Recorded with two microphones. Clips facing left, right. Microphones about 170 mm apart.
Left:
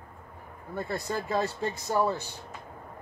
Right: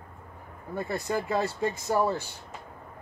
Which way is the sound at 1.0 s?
15° right (ahead or behind).